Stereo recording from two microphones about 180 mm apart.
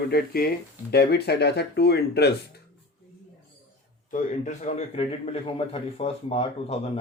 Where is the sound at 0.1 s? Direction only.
60° left (ahead or behind).